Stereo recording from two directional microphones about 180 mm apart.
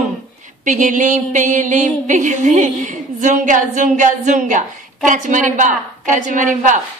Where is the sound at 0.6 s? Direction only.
45° right (ahead or behind).